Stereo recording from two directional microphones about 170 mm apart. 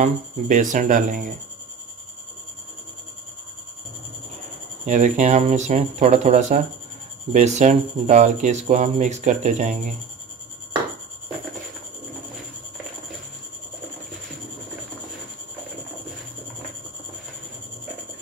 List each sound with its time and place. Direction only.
0.0 s speech: 50° right (ahead or behind)
4.8 s speech: 45° right (ahead or behind)